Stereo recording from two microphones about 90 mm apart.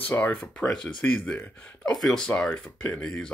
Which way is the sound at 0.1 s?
25° left (ahead or behind).